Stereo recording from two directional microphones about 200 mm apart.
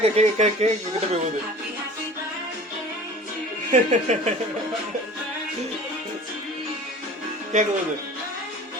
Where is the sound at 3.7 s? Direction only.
35° right (ahead or behind).